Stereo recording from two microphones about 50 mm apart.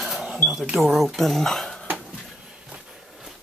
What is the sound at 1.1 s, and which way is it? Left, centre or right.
Speech, centre.